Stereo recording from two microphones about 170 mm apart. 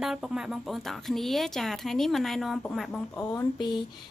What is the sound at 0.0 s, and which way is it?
Speech, centre (ahead or behind).